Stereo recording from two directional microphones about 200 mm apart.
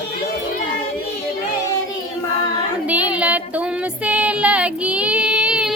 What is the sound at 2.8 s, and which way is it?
Music, 5° right (ahead or behind).